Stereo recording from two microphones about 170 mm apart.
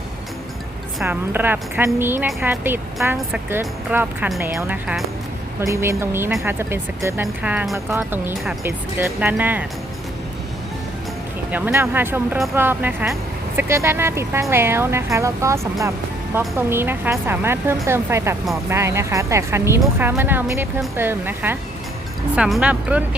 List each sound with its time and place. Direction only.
1.0 s speech: 10° right (ahead or behind)
5.5 s speech: 15° right (ahead or behind)
11.5 s speech: 10° right (ahead or behind)